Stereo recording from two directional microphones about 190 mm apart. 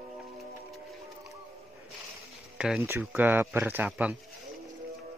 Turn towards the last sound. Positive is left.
turn(degrees=-5)  # may be behind; listen again after turning